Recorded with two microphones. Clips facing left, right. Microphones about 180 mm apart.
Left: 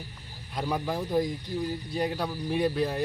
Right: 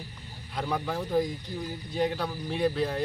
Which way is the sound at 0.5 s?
10° left (ahead or behind).